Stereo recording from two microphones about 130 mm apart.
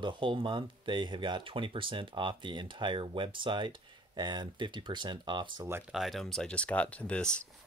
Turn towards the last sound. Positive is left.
turn(degrees=10)  # may be behind; listen again after turning